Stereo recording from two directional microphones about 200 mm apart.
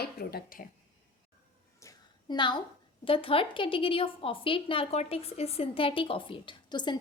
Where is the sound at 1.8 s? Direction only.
20° left (ahead or behind).